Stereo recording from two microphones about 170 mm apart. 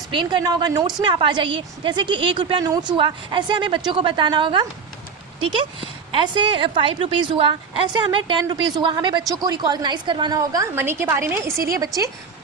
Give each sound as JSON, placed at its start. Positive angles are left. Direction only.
{"t": 0.1, "sound": "a woman's voice", "side_deg": -25}